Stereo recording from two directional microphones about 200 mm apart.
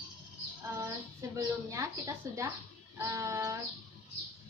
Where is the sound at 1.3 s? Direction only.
15° right (ahead or behind).